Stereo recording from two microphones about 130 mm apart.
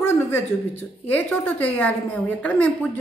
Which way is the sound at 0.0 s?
20° left (ahead or behind).